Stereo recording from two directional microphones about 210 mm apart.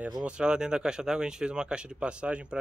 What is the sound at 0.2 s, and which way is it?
Speech, 5° right (ahead or behind).